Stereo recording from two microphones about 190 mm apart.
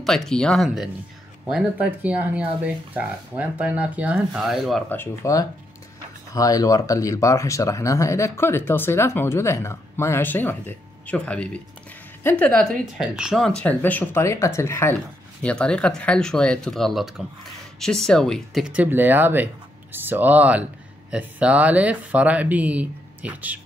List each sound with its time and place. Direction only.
0.0 s speech: centre (ahead or behind)